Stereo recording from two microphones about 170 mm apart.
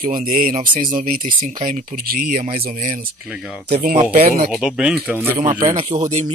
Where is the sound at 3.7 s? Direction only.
55° right (ahead or behind).